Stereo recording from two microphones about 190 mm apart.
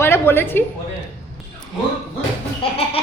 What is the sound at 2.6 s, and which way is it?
Goat, 30° left (ahead or behind).